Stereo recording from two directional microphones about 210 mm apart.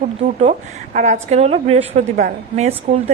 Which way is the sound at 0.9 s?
35° right (ahead or behind).